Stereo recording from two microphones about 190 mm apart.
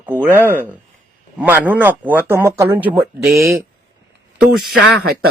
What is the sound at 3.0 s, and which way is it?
Speech, 55° right (ahead or behind).